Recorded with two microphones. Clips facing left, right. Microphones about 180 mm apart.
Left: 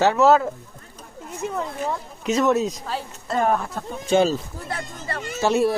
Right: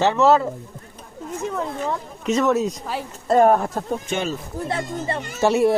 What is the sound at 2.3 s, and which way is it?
Speech, 5° left (ahead or behind).